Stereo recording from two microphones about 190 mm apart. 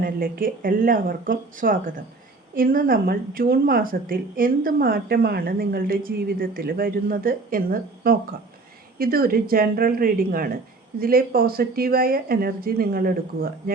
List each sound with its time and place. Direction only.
0.0 s speech: 50° right (ahead or behind)